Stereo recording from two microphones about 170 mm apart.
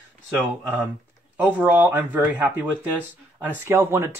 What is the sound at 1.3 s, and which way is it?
Speech, 10° right (ahead or behind).